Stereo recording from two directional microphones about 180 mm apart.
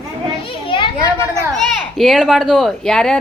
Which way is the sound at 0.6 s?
30° left (ahead or behind).